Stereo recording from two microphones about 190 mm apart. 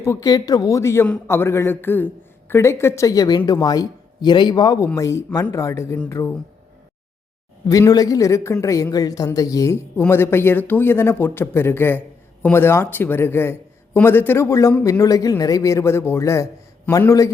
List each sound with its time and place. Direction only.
0.0 s speech: 15° left (ahead or behind)
7.7 s speech: 20° left (ahead or behind)